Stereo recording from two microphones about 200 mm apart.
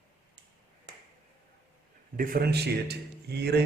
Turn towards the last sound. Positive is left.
turn(degrees=-55)  # may be behind; listen again after turning